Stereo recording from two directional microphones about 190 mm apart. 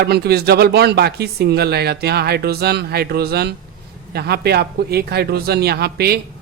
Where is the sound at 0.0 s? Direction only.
60° right (ahead or behind).